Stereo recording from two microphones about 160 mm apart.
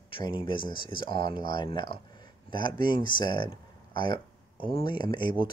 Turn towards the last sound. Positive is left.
turn(degrees=30)  # may be behind; listen again after turning